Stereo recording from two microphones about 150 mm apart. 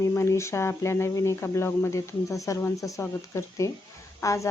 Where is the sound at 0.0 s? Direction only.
20° left (ahead or behind).